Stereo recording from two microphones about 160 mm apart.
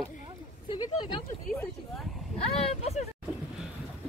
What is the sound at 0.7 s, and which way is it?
Speech, 30° left (ahead or behind).